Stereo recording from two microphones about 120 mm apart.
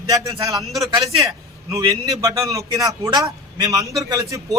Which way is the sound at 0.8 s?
30° right (ahead or behind).